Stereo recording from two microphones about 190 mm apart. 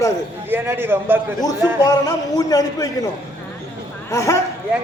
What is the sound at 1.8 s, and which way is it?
Speech, 20° left (ahead or behind).